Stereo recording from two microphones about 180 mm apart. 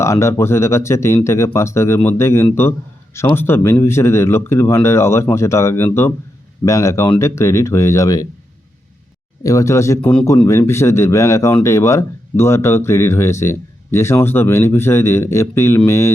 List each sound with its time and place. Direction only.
0.0 s speech: 15° left (ahead or behind)
9.4 s speech: 20° left (ahead or behind)